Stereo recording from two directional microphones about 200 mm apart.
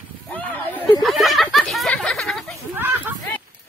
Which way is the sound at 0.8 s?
Centre (ahead or behind).